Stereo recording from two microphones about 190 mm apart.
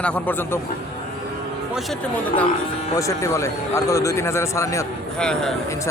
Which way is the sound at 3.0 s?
15° left (ahead or behind).